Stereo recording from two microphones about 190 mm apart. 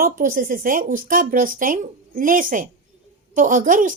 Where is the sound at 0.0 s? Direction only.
45° right (ahead or behind).